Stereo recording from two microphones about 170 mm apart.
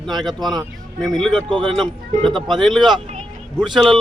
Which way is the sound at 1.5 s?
25° right (ahead or behind).